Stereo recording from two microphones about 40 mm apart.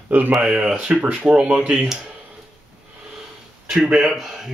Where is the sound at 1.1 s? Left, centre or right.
Right.